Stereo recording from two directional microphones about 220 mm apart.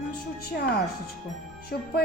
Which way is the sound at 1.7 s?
40° left (ahead or behind).